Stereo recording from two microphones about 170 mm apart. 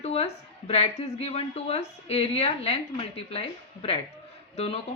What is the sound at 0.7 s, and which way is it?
A woman's voice, 35° left (ahead or behind).